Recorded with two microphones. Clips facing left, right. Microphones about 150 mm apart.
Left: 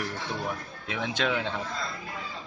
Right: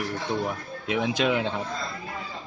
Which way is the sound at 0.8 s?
15° right (ahead or behind).